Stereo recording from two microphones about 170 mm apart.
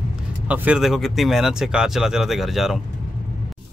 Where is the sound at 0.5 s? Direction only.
5° right (ahead or behind).